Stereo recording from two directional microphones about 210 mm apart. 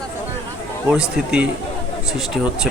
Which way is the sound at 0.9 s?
5° right (ahead or behind).